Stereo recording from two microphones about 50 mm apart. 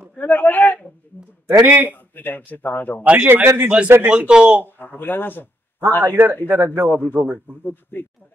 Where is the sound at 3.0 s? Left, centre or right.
Right.